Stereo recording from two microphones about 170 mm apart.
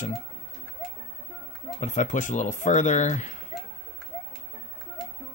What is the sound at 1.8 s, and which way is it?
Speech, 45° left (ahead or behind).